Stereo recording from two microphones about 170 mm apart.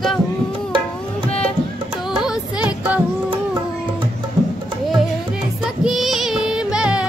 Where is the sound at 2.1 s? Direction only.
5° right (ahead or behind).